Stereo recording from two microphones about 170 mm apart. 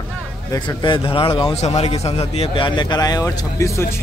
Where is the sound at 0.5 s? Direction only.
30° left (ahead or behind).